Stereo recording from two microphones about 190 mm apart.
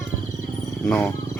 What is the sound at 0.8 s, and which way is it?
Wild animals, 10° left (ahead or behind).